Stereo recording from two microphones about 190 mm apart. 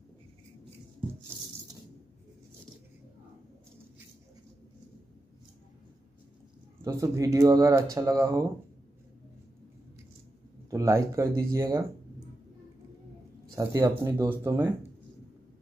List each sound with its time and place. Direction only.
6.8 s speech: 15° right (ahead or behind)
10.7 s speech: 15° right (ahead or behind)
13.6 s speech: 15° right (ahead or behind)